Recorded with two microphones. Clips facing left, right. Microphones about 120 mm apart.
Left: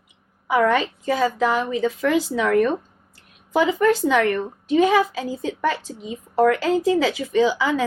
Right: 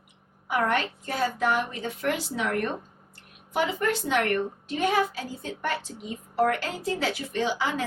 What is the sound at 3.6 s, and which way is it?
Speech, 90° left.